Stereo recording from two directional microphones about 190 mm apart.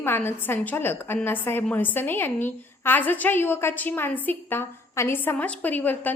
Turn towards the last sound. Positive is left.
turn(degrees=10)  # may be behind; listen again after turning